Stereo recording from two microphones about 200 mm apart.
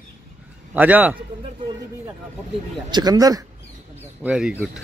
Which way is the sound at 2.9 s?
20° right (ahead or behind).